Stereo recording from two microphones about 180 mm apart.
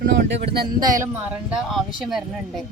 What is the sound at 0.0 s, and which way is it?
Speech, 65° right (ahead or behind).